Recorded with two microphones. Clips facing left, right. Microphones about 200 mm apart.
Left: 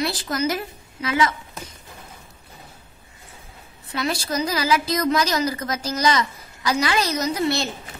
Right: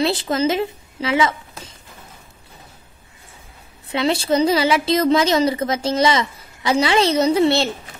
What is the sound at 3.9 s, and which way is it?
A woman's voice, 25° right (ahead or behind).